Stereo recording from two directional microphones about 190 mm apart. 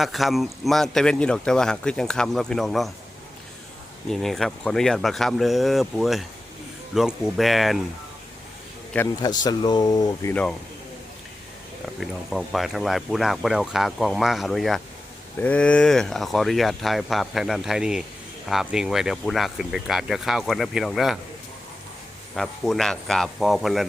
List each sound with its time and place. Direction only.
0.0 s speech: centre (ahead or behind)
4.1 s speech: centre (ahead or behind)
9.2 s speech: 20° left (ahead or behind)
11.9 s speech: centre (ahead or behind)
22.4 s speech: centre (ahead or behind)